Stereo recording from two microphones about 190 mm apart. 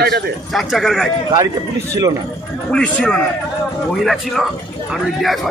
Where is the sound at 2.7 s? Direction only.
5° left (ahead or behind).